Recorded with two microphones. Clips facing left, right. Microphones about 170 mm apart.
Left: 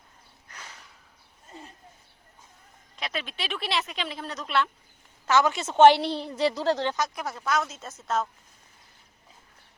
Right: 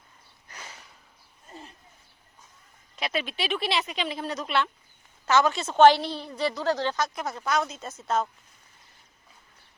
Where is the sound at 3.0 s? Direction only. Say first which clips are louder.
Right 4 dB; 5° right (ahead or behind).